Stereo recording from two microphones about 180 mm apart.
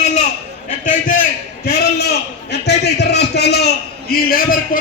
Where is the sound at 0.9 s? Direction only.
50° left (ahead or behind).